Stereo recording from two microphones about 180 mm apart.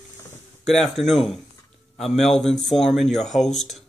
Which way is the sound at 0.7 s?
Centre (ahead or behind).